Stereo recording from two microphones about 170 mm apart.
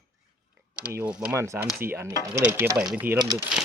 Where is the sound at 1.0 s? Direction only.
5° right (ahead or behind).